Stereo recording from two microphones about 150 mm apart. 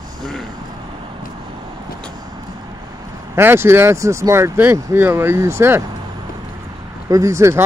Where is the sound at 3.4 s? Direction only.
15° right (ahead or behind).